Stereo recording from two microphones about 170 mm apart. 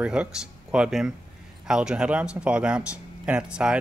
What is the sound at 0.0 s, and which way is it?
Speech, 5° right (ahead or behind).